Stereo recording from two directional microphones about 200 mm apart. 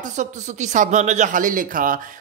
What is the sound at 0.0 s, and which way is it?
Speech, 35° right (ahead or behind).